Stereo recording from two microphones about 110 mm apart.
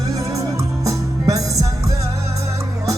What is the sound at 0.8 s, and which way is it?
Music, 30° right (ahead or behind).